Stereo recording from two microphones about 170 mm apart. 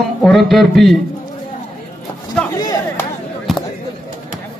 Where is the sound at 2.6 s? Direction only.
20° left (ahead or behind).